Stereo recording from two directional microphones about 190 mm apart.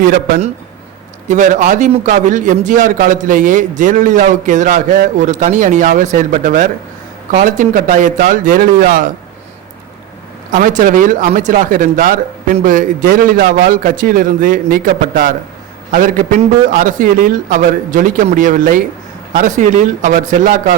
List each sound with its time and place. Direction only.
1.3 s a man's voice: 40° right (ahead or behind)
10.5 s speech: 45° right (ahead or behind)